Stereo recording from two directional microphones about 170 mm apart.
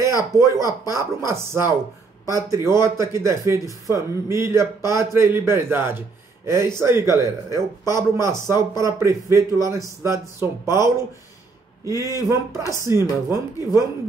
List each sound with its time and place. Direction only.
0.0 s speech: 15° right (ahead or behind)